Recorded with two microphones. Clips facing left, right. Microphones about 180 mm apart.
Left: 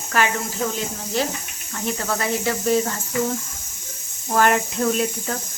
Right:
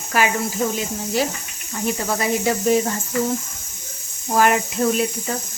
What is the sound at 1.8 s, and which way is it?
Speech, 15° right (ahead or behind).